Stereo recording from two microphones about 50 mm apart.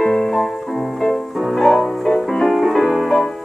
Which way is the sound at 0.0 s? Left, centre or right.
Centre.